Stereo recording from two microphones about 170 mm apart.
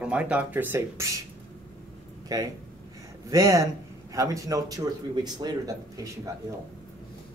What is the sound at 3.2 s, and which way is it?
A man's voice, 20° right (ahead or behind).